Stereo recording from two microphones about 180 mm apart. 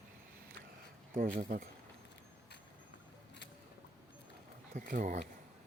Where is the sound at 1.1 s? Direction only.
45° right (ahead or behind).